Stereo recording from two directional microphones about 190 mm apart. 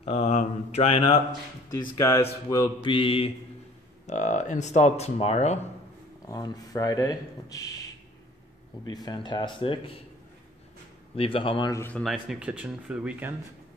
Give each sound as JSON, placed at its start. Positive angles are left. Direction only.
{"t": 0.0, "sound": "speech", "side_deg": 35}
{"t": 1.8, "sound": "speech", "side_deg": 15}
{"t": 6.2, "sound": "speech", "side_deg": 20}
{"t": 8.8, "sound": "speech", "side_deg": 20}
{"t": 11.1, "sound": "speech", "side_deg": 30}
{"t": 11.7, "sound": "speech", "side_deg": 10}
{"t": 12.0, "sound": "speech", "side_deg": 0}